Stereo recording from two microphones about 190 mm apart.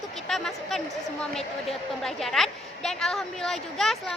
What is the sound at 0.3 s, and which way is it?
A woman's voice, centre (ahead or behind).